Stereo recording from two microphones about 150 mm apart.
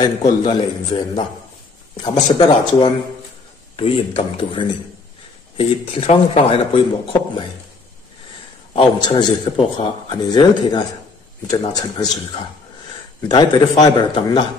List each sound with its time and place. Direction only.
0.4 s a man's voice: 35° left (ahead or behind)
8.7 s a man's voice: 35° left (ahead or behind)